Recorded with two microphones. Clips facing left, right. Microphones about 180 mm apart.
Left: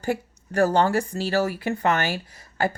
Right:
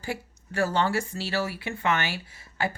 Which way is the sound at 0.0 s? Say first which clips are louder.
Left 7 dB; 45° left (ahead or behind).